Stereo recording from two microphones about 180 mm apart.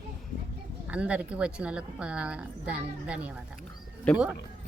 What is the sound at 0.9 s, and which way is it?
A woman's voice, 5° right (ahead or behind).